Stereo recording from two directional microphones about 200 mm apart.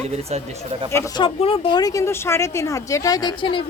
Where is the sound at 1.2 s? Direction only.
25° left (ahead or behind).